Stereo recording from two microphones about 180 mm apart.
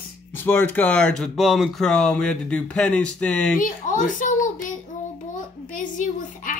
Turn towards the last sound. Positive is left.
turn(degrees=45)  # may be behind; listen again after turning